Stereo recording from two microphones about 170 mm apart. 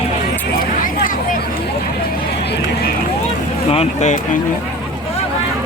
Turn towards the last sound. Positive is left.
turn(degrees=45)  # may be behind; listen again after turning